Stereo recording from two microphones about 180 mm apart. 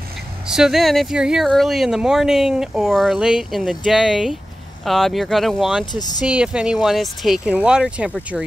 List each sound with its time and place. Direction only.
0.5 s speech: centre (ahead or behind)
5.9 s speech: 20° left (ahead or behind)
6.2 s speech: 5° right (ahead or behind)